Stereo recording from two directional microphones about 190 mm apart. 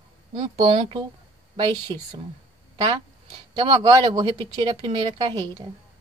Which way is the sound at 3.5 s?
25° right (ahead or behind).